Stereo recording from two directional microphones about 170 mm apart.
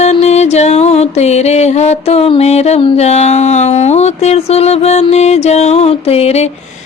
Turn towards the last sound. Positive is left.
turn(degrees=40)  # may be behind; listen again after turning